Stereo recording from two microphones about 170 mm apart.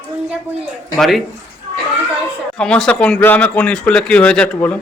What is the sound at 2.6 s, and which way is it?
Speech, 5° left (ahead or behind).